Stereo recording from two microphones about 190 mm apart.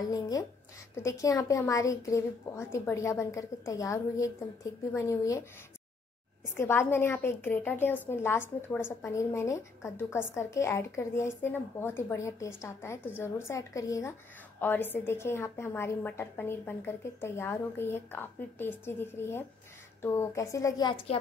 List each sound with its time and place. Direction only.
0.1 s a woman's voice: 20° left (ahead or behind)
6.5 s a woman's voice: 15° left (ahead or behind)